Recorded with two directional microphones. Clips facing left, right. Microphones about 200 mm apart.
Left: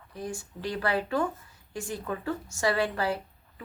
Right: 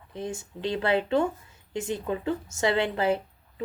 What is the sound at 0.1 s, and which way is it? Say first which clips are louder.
Speech: right 3 dB; 25° right (ahead or behind).